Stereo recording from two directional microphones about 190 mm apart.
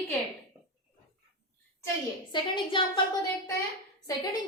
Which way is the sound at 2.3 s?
25° left (ahead or behind).